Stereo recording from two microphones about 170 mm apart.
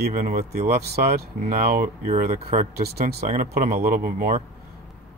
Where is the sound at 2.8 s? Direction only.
65° right (ahead or behind).